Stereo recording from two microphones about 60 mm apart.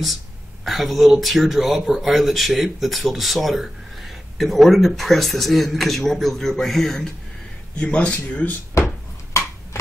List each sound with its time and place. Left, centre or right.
0.7 s speech: centre
7.7 s speech: centre